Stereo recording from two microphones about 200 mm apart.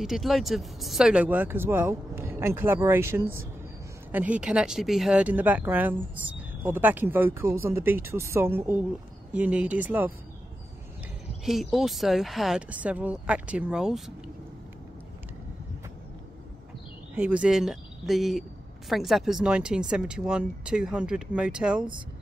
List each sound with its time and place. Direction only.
0.0 s speech: centre (ahead or behind)
11.7 s speech: centre (ahead or behind)
17.1 s speech: 5° right (ahead or behind)